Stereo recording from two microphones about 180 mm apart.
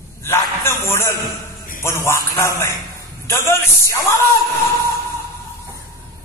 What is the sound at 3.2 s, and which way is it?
Speech, 15° left (ahead or behind).